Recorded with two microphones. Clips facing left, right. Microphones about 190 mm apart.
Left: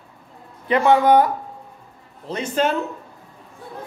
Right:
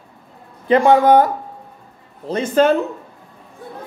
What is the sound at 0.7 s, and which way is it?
A man's voice, 35° right (ahead or behind).